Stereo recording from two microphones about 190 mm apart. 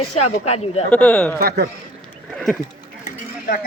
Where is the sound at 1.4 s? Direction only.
55° right (ahead or behind).